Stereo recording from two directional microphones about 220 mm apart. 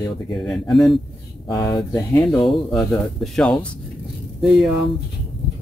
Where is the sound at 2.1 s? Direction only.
Centre (ahead or behind).